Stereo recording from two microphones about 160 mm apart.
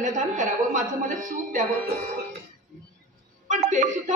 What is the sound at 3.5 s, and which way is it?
Music, 50° right (ahead or behind).